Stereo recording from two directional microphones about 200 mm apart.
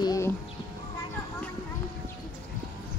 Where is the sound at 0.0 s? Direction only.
15° left (ahead or behind).